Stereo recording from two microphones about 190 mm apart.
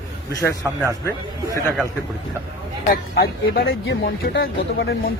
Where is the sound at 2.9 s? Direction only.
55° left (ahead or behind).